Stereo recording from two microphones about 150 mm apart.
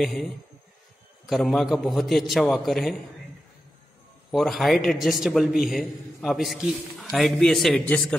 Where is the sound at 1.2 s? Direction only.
Centre (ahead or behind).